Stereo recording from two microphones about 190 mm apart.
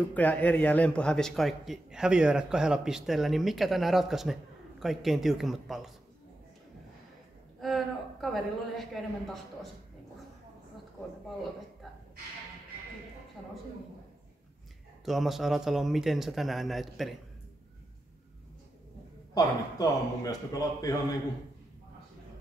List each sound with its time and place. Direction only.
0.1 s a man's voice: 10° left (ahead or behind)
7.6 s a man's voice: centre (ahead or behind)
15.0 s a man's voice: centre (ahead or behind)
19.3 s a man's voice: 20° left (ahead or behind)